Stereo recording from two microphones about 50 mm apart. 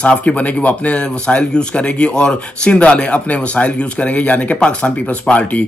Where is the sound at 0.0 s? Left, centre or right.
Left.